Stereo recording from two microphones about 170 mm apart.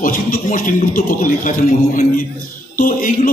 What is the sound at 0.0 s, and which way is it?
A man's voice, 55° left (ahead or behind).